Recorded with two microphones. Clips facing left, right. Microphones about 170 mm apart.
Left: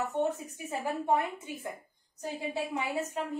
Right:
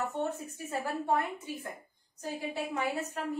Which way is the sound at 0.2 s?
15° left (ahead or behind).